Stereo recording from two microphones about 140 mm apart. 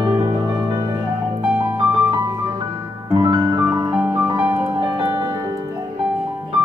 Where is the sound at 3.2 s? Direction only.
30° right (ahead or behind).